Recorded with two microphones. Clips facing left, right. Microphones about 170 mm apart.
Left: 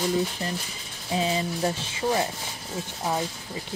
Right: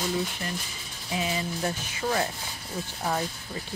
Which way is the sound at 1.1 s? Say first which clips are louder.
Left 4 dB; 30° left (ahead or behind).